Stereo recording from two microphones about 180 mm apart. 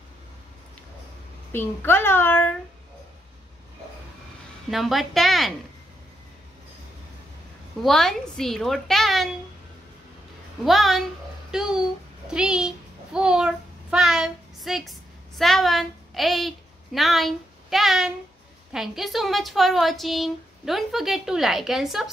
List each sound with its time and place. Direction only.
1.5 s a child's voice: 10° left (ahead or behind)
4.6 s a woman's voice: centre (ahead or behind)
7.8 s a woman's voice: centre (ahead or behind)
10.6 s a woman's voice: centre (ahead or behind)
11.5 s babbling: 5° right (ahead or behind)
18.7 s a woman's voice: centre (ahead or behind)